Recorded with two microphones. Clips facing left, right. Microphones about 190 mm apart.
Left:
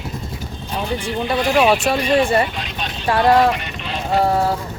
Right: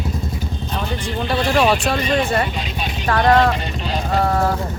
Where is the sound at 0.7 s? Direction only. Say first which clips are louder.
Left 3 dB; 10° left (ahead or behind).